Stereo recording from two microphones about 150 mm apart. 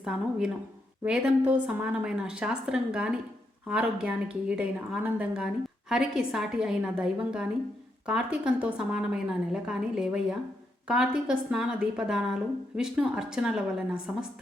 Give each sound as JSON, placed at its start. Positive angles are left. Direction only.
{"t": 0.0, "sound": "a woman's voice", "side_deg": -5}